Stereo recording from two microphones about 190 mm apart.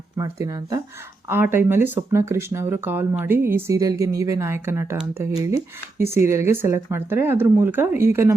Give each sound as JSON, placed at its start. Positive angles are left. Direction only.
{"t": 0.2, "sound": "speech", "side_deg": -15}